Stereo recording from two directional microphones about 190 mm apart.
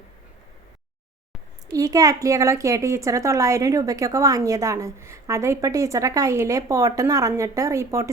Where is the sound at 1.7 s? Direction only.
20° right (ahead or behind).